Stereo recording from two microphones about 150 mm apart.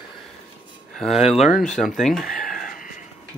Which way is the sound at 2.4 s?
70° left (ahead or behind).